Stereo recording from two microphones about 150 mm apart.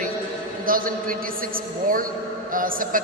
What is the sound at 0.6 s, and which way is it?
Music, 70° right (ahead or behind).